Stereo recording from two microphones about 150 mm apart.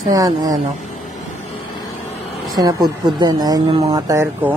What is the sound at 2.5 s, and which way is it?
Speech, 25° right (ahead or behind).